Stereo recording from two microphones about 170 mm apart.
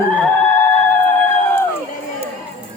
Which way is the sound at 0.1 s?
10° left (ahead or behind).